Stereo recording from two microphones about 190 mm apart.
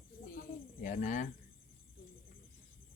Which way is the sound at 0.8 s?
40° left (ahead or behind).